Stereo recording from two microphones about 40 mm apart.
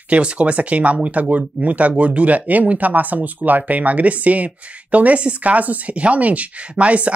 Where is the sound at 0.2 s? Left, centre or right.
Right.